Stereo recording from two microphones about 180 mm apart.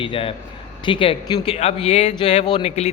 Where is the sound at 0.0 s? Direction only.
30° left (ahead or behind).